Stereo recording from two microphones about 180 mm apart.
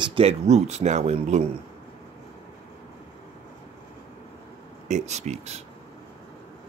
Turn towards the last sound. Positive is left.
turn(degrees=-40)  # may be behind; listen again after turning